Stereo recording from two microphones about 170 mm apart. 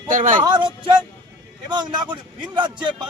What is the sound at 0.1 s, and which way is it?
Speech, 50° right (ahead or behind).